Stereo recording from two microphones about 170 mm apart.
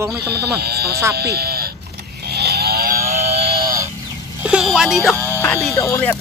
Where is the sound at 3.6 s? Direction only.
20° right (ahead or behind).